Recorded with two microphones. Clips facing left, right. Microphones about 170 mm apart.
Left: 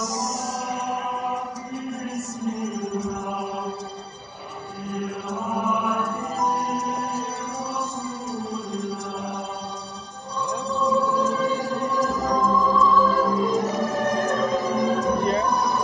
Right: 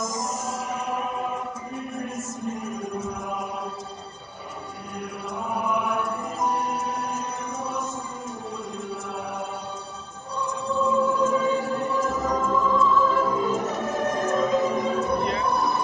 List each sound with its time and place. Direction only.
0.7 s music: 35° left (ahead or behind)
6.6 s music: 40° left (ahead or behind)
10.4 s music: 35° left (ahead or behind)